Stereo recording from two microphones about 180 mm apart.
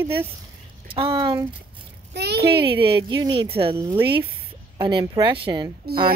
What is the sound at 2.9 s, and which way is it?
Speech, 20° right (ahead or behind).